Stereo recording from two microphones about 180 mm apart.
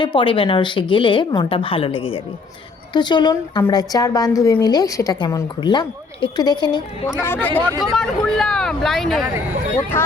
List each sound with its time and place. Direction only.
0.0 s a woman's voice: 25° left (ahead or behind)
7.4 s speech: 10° left (ahead or behind)